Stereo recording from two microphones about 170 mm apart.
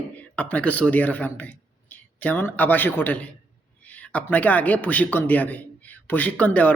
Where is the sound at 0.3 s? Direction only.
10° left (ahead or behind).